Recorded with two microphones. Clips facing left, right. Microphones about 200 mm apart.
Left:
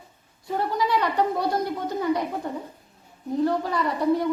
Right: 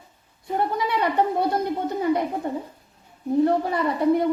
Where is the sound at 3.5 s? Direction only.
25° right (ahead or behind).